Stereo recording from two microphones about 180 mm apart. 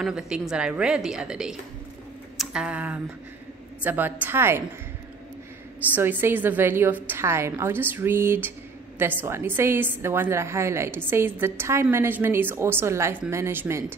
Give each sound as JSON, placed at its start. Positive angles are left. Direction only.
{"t": 0.0, "sound": "a woman's voice", "side_deg": -5}
{"t": 2.3, "sound": "a sound", "side_deg": -5}
{"t": 3.8, "sound": "a woman's voice", "side_deg": -10}
{"t": 5.9, "sound": "a woman's voice", "side_deg": -10}